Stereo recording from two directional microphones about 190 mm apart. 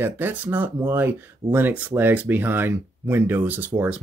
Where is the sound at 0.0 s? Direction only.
10° right (ahead or behind).